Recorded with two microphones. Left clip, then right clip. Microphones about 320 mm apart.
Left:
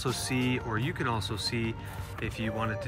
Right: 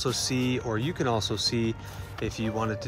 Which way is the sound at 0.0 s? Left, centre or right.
Centre.